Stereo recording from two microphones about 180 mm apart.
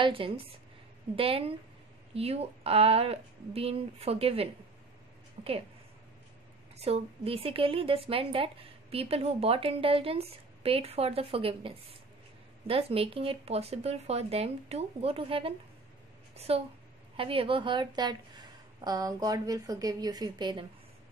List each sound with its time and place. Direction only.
0.0 s a woman's voice: 30° right (ahead or behind)
6.8 s a woman's voice: 35° right (ahead or behind)